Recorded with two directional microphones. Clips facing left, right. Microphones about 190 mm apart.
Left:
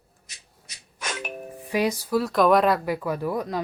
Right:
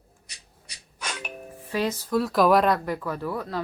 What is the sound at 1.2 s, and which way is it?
Music, 15° left (ahead or behind).